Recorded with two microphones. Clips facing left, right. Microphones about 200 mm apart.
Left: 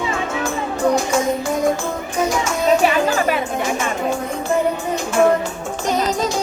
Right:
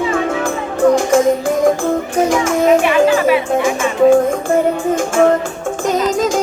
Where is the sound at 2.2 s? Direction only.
50° right (ahead or behind).